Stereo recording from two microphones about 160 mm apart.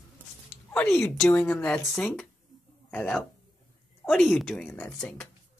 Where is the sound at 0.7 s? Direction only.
15° left (ahead or behind).